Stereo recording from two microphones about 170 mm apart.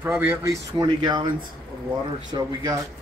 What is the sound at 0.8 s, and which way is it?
Speech, 25° right (ahead or behind).